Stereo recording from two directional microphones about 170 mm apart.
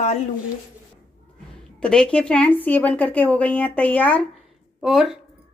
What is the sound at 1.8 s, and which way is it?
Speech, 5° left (ahead or behind).